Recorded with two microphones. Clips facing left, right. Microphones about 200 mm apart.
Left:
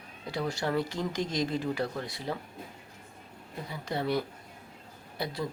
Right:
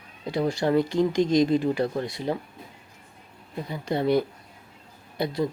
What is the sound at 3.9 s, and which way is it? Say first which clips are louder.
Speech: right 8 dB; 20° right (ahead or behind).